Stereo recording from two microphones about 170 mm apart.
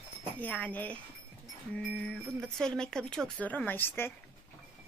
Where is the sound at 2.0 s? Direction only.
5° left (ahead or behind).